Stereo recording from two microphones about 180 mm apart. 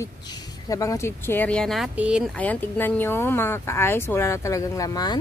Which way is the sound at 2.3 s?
5° left (ahead or behind).